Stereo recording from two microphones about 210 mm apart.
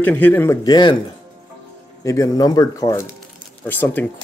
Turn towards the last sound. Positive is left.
turn(degrees=10)  # may be behind; listen again after turning